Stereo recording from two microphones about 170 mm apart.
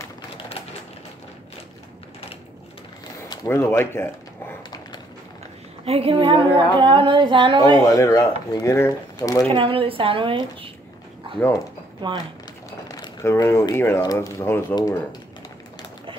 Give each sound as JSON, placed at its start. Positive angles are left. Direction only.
{"t": 3.3, "sound": "a sound", "side_deg": 15}
{"t": 5.9, "sound": "speech", "side_deg": -35}
{"t": 7.8, "sound": "speech", "side_deg": 20}
{"t": 9.5, "sound": "a woman's voice", "side_deg": -30}
{"t": 12.0, "sound": "speech", "side_deg": -30}
{"t": 12.8, "sound": "speech", "side_deg": 20}